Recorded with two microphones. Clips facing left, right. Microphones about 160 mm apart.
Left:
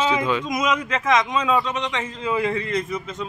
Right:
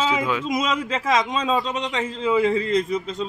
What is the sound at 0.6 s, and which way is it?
Speech, 30° right (ahead or behind).